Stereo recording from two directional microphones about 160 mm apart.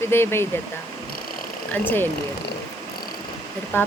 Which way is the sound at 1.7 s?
10° left (ahead or behind).